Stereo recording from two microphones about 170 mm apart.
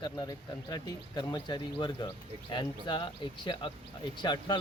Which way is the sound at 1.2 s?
25° left (ahead or behind).